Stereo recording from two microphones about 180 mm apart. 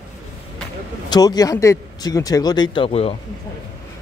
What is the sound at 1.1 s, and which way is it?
Speech, 20° left (ahead or behind).